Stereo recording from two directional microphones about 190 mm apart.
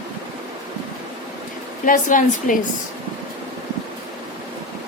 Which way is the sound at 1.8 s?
45° left (ahead or behind).